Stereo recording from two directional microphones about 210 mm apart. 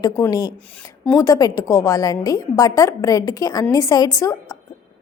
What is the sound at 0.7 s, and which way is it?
A woman's voice, 5° left (ahead or behind).